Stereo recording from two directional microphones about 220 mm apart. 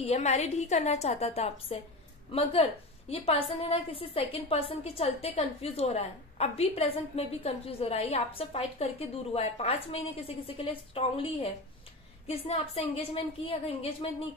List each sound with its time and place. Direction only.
0.0 s a woman's voice: 30° left (ahead or behind)